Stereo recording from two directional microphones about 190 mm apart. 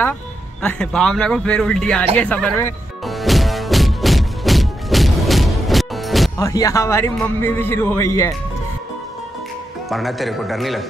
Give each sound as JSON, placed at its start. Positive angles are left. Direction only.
{"t": 0.6, "sound": "a man's voice", "side_deg": 5}
{"t": 2.1, "sound": "music", "side_deg": 5}
{"t": 6.3, "sound": "music", "side_deg": 15}
{"t": 9.8, "sound": "a man's voice", "side_deg": 0}